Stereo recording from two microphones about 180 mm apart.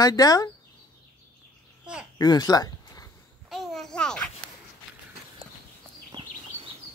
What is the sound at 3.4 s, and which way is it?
Babbling, centre (ahead or behind).